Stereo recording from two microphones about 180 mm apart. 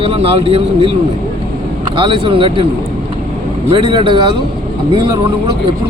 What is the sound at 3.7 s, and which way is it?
Speech, 30° right (ahead or behind).